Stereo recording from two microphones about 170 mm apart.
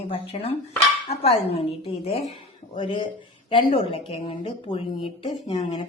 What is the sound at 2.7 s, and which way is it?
A woman's voice, 30° left (ahead or behind).